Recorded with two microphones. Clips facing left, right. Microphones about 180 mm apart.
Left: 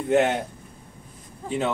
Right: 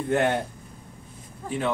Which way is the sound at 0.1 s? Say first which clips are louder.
Left 3 dB; 20° left (ahead or behind).